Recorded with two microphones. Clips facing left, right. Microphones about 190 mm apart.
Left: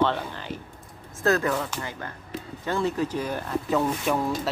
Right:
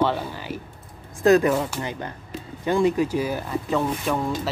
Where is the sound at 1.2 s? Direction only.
15° right (ahead or behind).